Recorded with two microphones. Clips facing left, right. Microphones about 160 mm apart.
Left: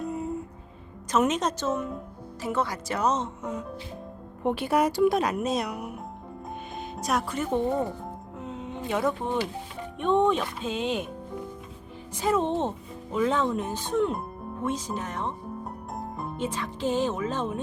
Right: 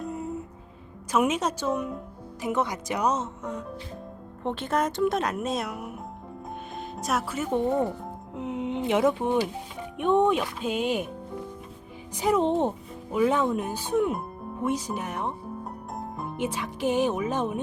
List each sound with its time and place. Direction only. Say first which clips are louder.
0.0 s music: left 2 dB; centre (ahead or behind)
1.1 s speech: even; 10° right (ahead or behind)
3.4 s speech: left 1 dB; centre (ahead or behind)
8.4 s a sound: right 7 dB; 15° right (ahead or behind)
9.1 s speech: right 3 dB; 15° right (ahead or behind)
12.1 s speech: right 2 dB; 15° right (ahead or behind)
14.7 s speech: right 2 dB; 10° right (ahead or behind)
15.6 s music: even; centre (ahead or behind)
16.4 s speech: right 2 dB; 15° right (ahead or behind)